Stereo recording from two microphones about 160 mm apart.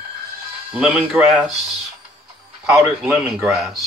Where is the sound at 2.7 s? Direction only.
5° right (ahead or behind).